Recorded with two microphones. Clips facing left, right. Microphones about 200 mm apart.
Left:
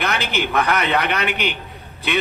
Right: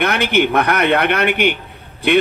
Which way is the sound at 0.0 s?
60° right (ahead or behind).